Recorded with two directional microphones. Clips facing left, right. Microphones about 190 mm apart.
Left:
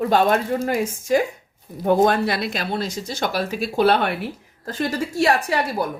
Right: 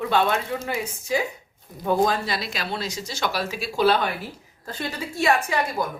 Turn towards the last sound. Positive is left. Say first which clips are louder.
# left 2 dB
turn(degrees=35)  # may be behind; listen again after turning